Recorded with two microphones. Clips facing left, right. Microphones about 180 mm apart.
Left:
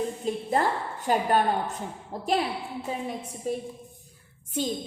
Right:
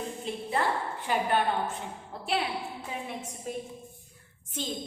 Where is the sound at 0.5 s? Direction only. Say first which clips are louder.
Left 2 dB; 40° left (ahead or behind).